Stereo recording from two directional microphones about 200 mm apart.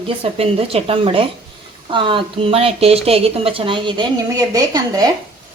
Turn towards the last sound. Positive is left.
turn(degrees=-20)  # may be behind; listen again after turning